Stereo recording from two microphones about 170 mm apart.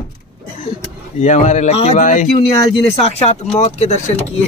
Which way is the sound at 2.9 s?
35° left (ahead or behind).